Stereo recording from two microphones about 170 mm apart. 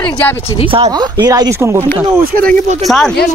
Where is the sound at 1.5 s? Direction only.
15° right (ahead or behind).